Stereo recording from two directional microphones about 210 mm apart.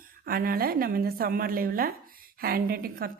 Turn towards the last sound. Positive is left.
turn(degrees=-45)  # may be behind; listen again after turning